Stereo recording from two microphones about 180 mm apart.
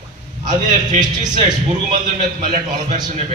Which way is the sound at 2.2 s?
45° right (ahead or behind).